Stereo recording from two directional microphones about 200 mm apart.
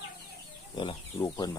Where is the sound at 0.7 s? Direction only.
25° left (ahead or behind).